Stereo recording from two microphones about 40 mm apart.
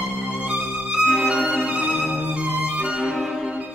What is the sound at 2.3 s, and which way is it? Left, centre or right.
Music, right.